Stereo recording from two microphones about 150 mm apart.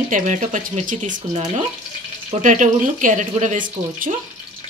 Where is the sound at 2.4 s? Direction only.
55° right (ahead or behind).